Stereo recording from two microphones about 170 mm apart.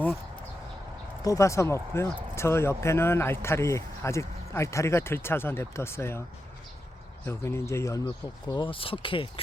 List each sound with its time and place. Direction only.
1.2 s speech: 20° left (ahead or behind)
7.3 s speech: 15° left (ahead or behind); by 9.4 s 30° left (ahead or behind)